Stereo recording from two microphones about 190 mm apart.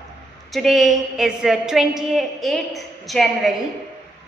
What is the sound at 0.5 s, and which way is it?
A woman's voice, centre (ahead or behind).